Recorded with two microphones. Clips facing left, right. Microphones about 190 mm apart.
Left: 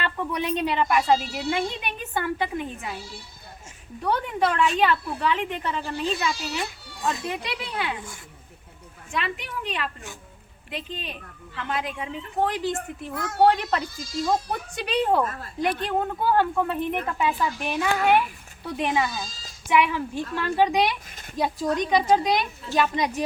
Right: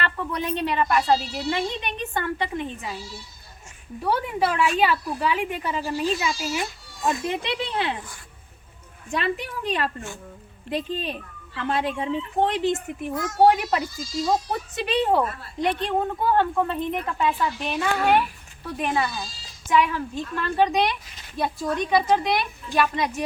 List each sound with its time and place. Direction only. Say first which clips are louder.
0.0 s speech: even; 10° left (ahead or behind)
4.0 s a woman's voice: even; 5° right (ahead or behind)
7.0 s speech: right 3 dB; 20° right (ahead or behind)
9.1 s a woman's voice: right 4 dB; 35° right (ahead or behind); by 13.1 s 20° right (ahead or behind)
13.1 s a woman's voice: even; 60° left (ahead or behind)
13.4 s a woman's voice: right 2 dB; 10° right (ahead or behind)
14.3 s speech: right 1 dB; centre (ahead or behind); by 23.1 s 15° left (ahead or behind)